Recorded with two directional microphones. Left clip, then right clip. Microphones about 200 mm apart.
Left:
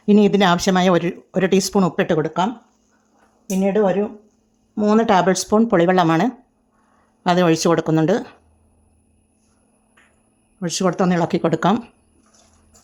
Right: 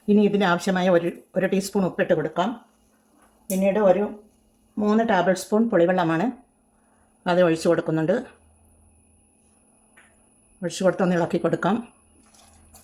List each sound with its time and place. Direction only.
0.0 s speech: 40° left (ahead or behind)
3.6 s speech: 50° left (ahead or behind)
10.6 s speech: 45° left (ahead or behind)